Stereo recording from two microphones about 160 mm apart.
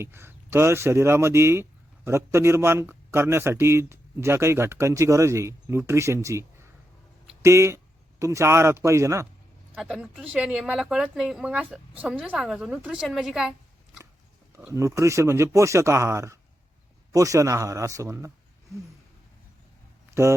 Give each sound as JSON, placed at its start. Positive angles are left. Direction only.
{"t": 0.0, "sound": "a man's voice", "side_deg": -15}
{"t": 9.7, "sound": "speech", "side_deg": -5}
{"t": 14.7, "sound": "a man's voice", "side_deg": -20}